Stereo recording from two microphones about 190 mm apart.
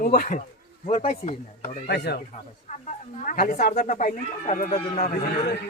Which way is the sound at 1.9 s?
60° left (ahead or behind).